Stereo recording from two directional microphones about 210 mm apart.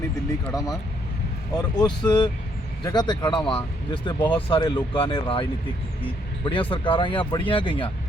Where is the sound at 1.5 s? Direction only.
20° left (ahead or behind).